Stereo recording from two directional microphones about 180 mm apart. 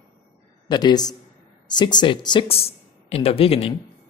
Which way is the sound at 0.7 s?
25° left (ahead or behind).